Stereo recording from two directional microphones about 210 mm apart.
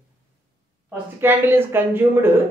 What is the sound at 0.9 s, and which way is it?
A woman's voice, 10° right (ahead or behind).